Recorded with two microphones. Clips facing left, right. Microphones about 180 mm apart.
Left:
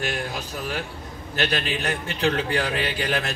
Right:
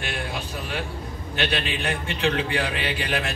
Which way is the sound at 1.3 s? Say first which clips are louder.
Left 1 dB; 40° left (ahead or behind).